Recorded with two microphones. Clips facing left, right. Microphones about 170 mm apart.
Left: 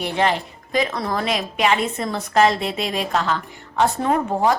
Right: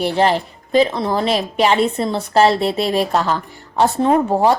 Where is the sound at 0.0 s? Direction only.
35° right (ahead or behind).